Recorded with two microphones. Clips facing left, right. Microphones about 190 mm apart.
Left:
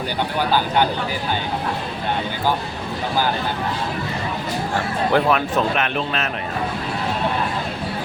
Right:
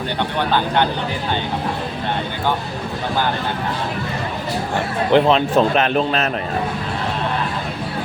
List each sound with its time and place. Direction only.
5.1 s a man's voice: 30° right (ahead or behind)